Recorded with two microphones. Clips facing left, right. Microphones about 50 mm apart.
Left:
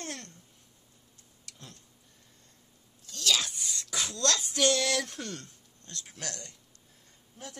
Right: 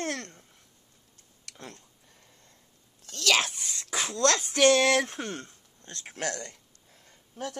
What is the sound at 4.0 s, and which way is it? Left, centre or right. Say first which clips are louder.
Speech: right 5 dB; right.